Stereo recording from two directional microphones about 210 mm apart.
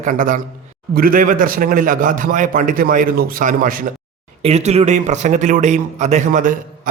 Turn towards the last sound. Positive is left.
turn(degrees=-40)  # may be behind; listen again after turning